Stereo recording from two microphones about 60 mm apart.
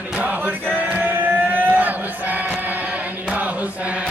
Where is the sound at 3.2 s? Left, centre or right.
Right.